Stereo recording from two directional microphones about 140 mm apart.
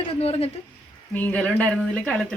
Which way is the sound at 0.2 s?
45° left (ahead or behind).